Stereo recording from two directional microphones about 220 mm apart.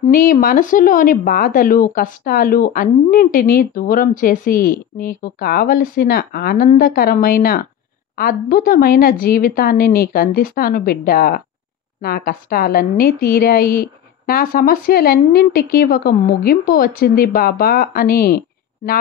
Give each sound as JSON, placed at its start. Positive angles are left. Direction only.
{"t": 0.0, "sound": "a woman's voice", "side_deg": 40}